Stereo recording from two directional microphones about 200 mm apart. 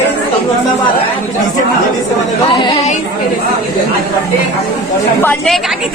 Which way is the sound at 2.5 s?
20° left (ahead or behind).